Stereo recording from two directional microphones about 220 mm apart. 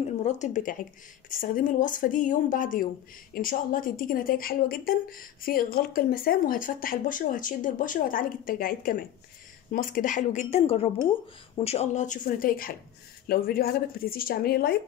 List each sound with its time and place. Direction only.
0.0 s a woman's voice: 30° left (ahead or behind)